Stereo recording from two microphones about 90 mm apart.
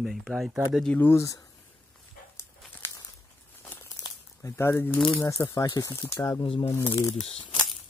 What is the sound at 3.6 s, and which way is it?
Crumpling, 30° left (ahead or behind).